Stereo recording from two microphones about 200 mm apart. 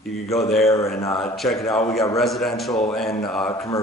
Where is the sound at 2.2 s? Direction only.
Centre (ahead or behind).